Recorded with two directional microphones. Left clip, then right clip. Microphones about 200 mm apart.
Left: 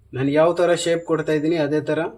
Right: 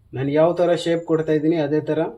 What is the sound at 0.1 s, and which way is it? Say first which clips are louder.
Speech: even; 15° left (ahead or behind).